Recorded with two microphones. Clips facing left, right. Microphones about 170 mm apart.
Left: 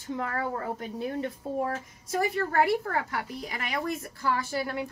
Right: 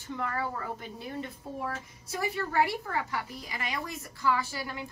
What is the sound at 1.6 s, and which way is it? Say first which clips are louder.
A woman's voice: left 5 dB; 50° left (ahead or behind).